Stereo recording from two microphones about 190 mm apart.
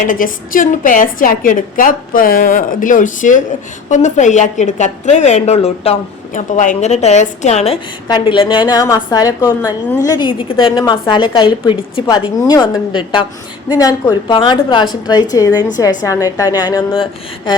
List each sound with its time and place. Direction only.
0.1 s a woman's voice: 45° left (ahead or behind)
8.0 s a woman's voice: 25° left (ahead or behind)